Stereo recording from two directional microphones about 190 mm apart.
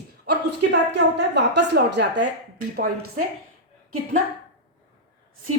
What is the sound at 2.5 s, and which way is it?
Speech, 45° right (ahead or behind).